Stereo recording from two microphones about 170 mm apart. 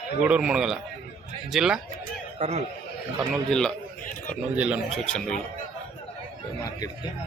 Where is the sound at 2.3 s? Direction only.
35° right (ahead or behind).